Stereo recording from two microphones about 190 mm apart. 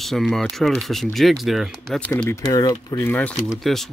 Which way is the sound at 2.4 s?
20° left (ahead or behind).